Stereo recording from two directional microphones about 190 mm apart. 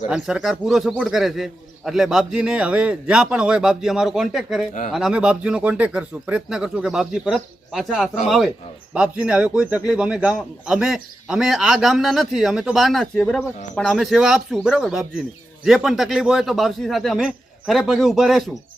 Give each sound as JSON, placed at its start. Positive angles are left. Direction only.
{"t": 0.1, "sound": "a man's voice", "side_deg": -5}